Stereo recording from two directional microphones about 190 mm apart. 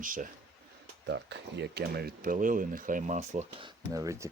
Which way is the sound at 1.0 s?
65° right (ahead or behind).